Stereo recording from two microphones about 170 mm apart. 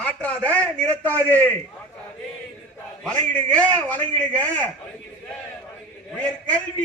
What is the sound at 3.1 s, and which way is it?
A man's voice, 10° left (ahead or behind).